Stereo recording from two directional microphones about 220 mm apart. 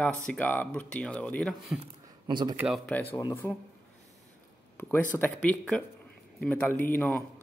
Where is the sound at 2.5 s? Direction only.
5° right (ahead or behind).